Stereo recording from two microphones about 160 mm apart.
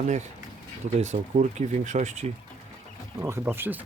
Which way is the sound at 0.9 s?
45° right (ahead or behind).